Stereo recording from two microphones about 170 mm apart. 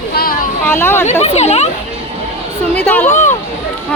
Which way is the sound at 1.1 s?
40° left (ahead or behind).